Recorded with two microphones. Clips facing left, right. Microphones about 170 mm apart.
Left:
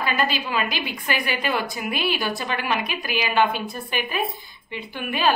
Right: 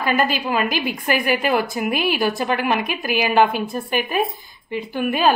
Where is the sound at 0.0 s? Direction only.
50° right (ahead or behind).